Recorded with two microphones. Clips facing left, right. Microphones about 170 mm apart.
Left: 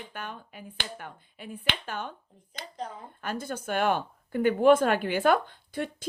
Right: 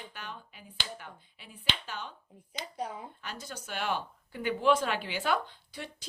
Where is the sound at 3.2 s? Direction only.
50° left (ahead or behind).